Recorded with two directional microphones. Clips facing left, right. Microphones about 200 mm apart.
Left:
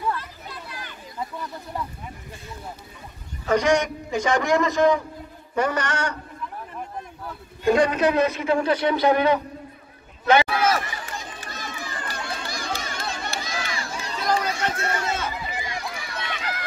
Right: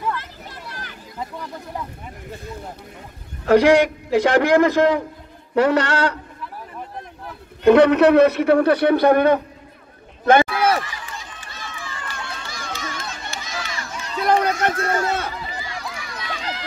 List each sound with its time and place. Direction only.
3.4 s a man's voice: 65° right (ahead or behind)
7.6 s a man's voice: 65° right (ahead or behind)
10.2 s run: 50° right (ahead or behind)
11.0 s run: 40° left (ahead or behind)
14.2 s a sound: 60° right (ahead or behind)
15.6 s run: 20° left (ahead or behind)
16.3 s run: 25° right (ahead or behind)